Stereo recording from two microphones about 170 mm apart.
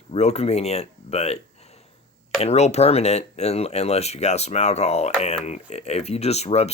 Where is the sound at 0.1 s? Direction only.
40° left (ahead or behind).